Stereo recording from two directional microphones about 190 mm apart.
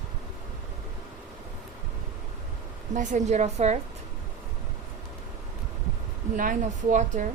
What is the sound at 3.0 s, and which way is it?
Speech, 40° right (ahead or behind).